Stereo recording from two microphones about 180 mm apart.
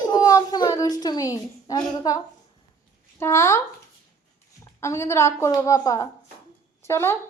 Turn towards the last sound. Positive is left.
turn(degrees=15)  # may be behind; listen again after turning